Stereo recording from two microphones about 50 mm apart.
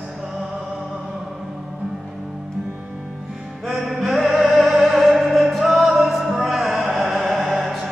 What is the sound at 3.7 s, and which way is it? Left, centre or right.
Music, centre.